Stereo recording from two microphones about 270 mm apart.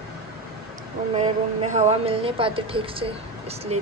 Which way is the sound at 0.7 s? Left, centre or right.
Right.